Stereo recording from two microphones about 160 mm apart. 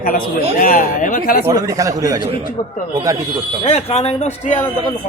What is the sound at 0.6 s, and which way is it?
Speech, 55° left (ahead or behind).